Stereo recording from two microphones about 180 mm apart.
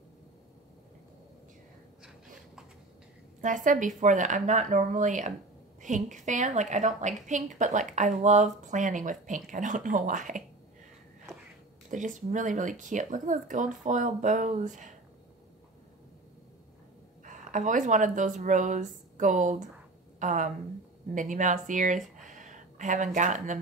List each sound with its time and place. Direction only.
3.3 s a woman's voice: 45° right (ahead or behind)
11.9 s a woman's voice: 45° right (ahead or behind)
17.2 s a woman's voice: 45° right (ahead or behind)
22.3 s a sound: 45° right (ahead or behind)